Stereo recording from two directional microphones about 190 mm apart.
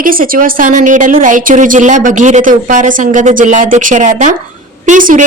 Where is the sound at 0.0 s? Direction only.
50° right (ahead or behind).